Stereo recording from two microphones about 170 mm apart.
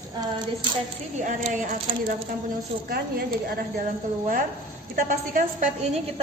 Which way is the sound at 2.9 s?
65° right (ahead or behind).